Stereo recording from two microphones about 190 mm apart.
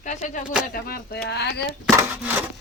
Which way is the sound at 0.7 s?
55° left (ahead or behind).